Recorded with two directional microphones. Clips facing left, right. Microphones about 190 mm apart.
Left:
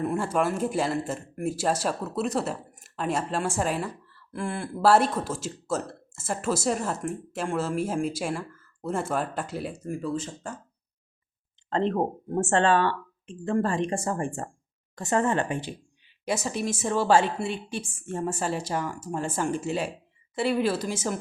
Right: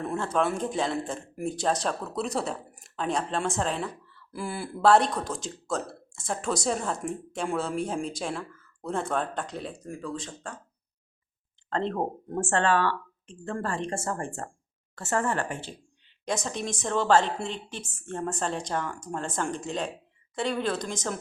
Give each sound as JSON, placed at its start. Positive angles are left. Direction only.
{"t": 0.0, "sound": "speech", "side_deg": 10}
{"t": 11.7, "sound": "speech", "side_deg": 15}